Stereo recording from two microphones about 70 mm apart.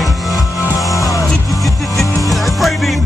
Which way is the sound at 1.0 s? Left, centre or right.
Left.